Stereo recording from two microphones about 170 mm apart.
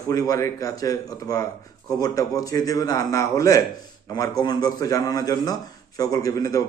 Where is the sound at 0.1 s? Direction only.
20° left (ahead or behind).